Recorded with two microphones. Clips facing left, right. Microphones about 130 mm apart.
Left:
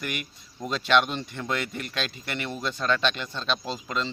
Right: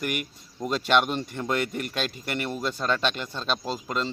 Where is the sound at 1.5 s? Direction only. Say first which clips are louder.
Right 3 dB; 45° right (ahead or behind).